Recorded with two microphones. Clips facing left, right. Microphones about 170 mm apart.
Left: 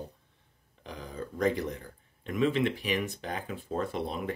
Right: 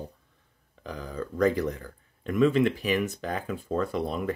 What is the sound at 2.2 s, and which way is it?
Speech, 45° right (ahead or behind).